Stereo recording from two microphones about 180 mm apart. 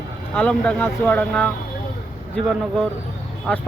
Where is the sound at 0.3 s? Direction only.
5° left (ahead or behind).